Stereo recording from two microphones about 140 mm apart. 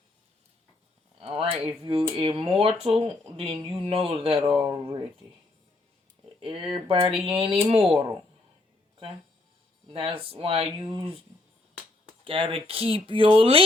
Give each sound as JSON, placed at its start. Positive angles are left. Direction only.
{"t": 1.2, "sound": "speech", "side_deg": -45}
{"t": 6.4, "sound": "speech", "side_deg": -40}
{"t": 9.8, "sound": "speech", "side_deg": -40}
{"t": 12.2, "sound": "speech", "side_deg": -40}